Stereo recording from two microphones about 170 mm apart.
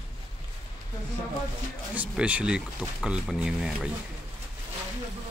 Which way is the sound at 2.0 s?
10° right (ahead or behind).